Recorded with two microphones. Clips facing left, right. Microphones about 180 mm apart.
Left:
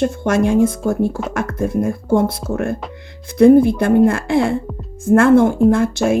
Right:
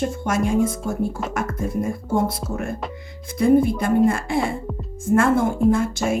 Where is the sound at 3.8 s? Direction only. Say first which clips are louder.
Left 5 dB; 75° left (ahead or behind).